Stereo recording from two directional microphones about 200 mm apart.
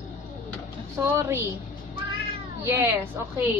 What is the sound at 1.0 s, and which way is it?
Speech, 10° right (ahead or behind).